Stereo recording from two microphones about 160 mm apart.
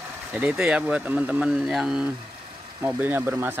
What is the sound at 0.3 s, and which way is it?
Speech, 10° right (ahead or behind).